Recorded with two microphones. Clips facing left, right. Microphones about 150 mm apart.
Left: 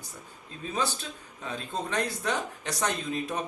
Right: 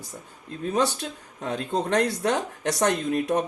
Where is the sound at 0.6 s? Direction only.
65° right (ahead or behind).